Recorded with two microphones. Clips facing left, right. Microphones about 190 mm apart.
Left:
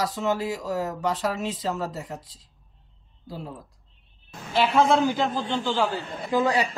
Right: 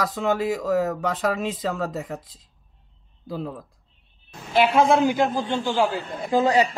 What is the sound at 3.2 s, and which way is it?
Speech, 55° right (ahead or behind).